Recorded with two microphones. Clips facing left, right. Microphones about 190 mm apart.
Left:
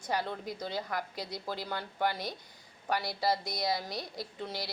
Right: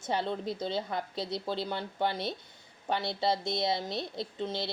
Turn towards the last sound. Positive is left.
turn(degrees=-25)  # may be behind; listen again after turning